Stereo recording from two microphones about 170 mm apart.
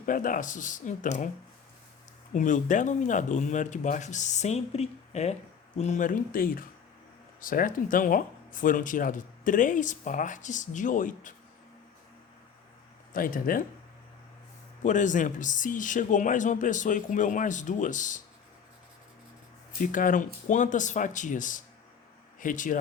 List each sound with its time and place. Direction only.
0.0 s speech: 50° left (ahead or behind)
2.3 s speech: 50° left (ahead or behind)
13.1 s speech: 55° left (ahead or behind)
14.8 s speech: 50° left (ahead or behind)
19.8 s speech: 50° left (ahead or behind)